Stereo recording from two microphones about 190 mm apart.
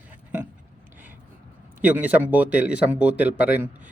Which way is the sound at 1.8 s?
10° right (ahead or behind).